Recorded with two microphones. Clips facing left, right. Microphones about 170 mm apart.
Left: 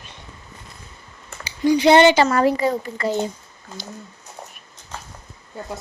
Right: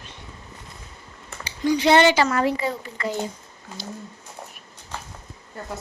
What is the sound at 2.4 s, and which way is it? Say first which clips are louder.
Speech: left 5 dB; 40° left (ahead or behind).